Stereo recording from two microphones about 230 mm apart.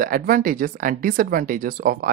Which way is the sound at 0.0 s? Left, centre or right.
Right.